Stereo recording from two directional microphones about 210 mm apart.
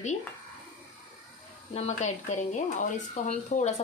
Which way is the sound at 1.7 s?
30° left (ahead or behind).